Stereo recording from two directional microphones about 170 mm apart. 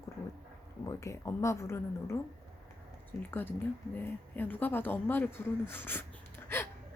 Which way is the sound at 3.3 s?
10° left (ahead or behind).